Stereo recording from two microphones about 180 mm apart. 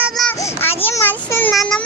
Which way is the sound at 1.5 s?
Centre (ahead or behind).